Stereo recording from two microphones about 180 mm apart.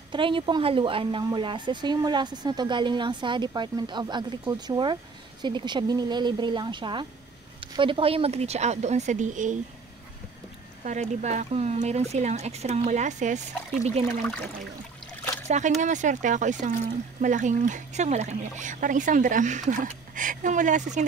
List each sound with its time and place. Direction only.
0.1 s a woman's voice: 25° right (ahead or behind); by 9.6 s 45° right (ahead or behind)
10.8 s speech: 40° right (ahead or behind)
15.4 s speech: 40° right (ahead or behind)